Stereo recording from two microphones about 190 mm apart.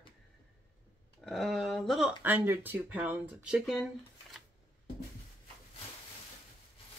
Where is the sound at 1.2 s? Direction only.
Centre (ahead or behind).